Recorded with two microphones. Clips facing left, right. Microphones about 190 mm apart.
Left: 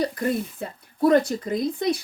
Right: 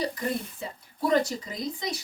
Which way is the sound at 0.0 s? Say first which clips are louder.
Left 5 dB; 55° left (ahead or behind).